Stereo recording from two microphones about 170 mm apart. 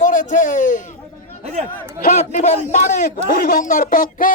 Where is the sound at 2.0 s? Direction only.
45° left (ahead or behind).